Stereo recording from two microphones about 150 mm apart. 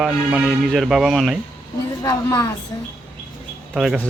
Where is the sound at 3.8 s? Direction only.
5° right (ahead or behind).